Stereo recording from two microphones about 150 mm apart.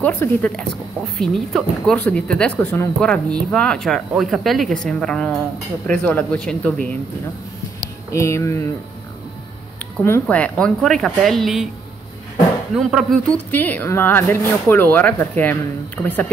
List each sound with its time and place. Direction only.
0.0 s speech: 10° left (ahead or behind)
8.1 s speech: 20° left (ahead or behind)
10.0 s speech: 15° left (ahead or behind)
12.7 s speech: centre (ahead or behind)
13.5 s speech: 10° left (ahead or behind)